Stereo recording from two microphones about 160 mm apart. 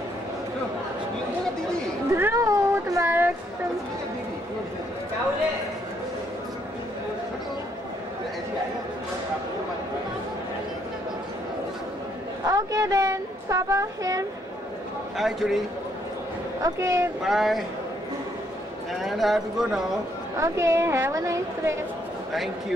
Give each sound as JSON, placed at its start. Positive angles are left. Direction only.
{"t": 2.1, "sound": "a sound", "side_deg": -15}
{"t": 12.4, "sound": "a sound", "side_deg": -20}
{"t": 15.1, "sound": "speech", "side_deg": 0}
{"t": 16.6, "sound": "speech", "side_deg": -20}
{"t": 17.2, "sound": "speech", "side_deg": 0}
{"t": 19.0, "sound": "speech", "side_deg": 0}
{"t": 20.3, "sound": "a woman's voice", "side_deg": -20}
{"t": 22.3, "sound": "speech", "side_deg": 0}